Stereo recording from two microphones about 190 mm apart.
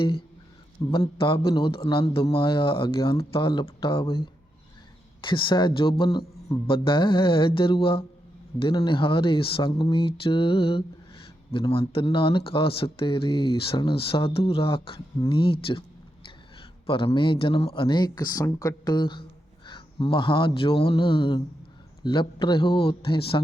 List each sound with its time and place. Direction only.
0.9 s speech: 25° left (ahead or behind)
16.6 s speech: 30° left (ahead or behind)